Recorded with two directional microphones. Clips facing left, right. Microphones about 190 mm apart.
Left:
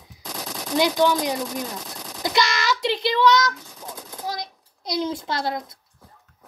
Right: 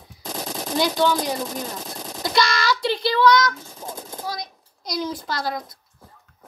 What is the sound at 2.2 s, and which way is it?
Child singing, 15° left (ahead or behind).